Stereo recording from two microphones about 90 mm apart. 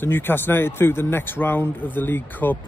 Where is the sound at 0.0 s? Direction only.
25° left (ahead or behind).